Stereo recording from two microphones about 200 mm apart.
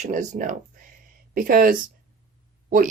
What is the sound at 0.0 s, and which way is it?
Speech, 40° right (ahead or behind).